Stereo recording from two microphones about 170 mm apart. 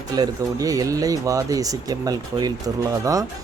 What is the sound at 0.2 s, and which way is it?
Speech, 20° right (ahead or behind).